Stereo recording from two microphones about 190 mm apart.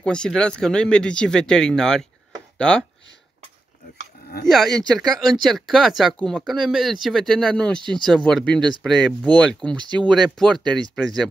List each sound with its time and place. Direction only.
0.0 s speech: 5° left (ahead or behind)
4.5 s speech: centre (ahead or behind)